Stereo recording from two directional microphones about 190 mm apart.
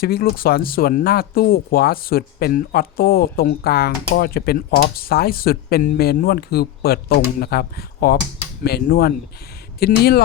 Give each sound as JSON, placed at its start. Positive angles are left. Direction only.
{"t": 0.0, "sound": "speech", "side_deg": 50}